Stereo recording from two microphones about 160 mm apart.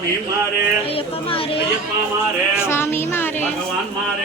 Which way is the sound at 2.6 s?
15° left (ahead or behind).